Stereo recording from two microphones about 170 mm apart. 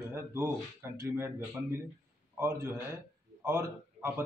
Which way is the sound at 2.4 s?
20° right (ahead or behind).